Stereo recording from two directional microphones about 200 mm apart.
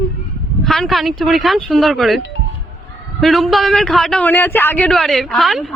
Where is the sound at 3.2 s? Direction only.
Centre (ahead or behind).